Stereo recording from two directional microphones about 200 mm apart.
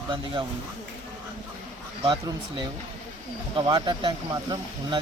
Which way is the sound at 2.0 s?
25° right (ahead or behind).